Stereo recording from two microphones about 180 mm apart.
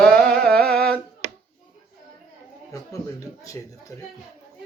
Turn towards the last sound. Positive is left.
turn(degrees=15)  # may be behind; listen again after turning